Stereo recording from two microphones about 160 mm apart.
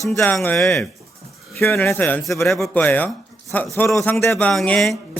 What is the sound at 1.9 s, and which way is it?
A man's voice, 10° left (ahead or behind).